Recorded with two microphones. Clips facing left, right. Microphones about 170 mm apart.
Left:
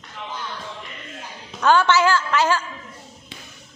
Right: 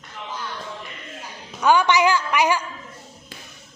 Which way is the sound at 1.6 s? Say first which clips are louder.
Even; 10° right (ahead or behind).